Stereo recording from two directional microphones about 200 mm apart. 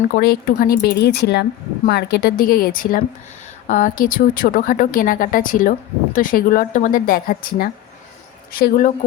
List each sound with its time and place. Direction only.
0.1 s speech: 45° left (ahead or behind)